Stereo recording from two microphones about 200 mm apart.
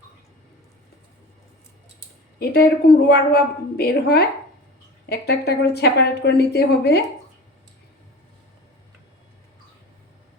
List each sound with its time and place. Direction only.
2.4 s speech: 50° left (ahead or behind)